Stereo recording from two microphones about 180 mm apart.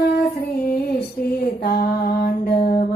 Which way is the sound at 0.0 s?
55° left (ahead or behind).